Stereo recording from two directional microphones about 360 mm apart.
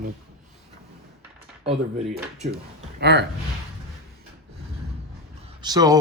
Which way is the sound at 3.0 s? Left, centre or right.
Right.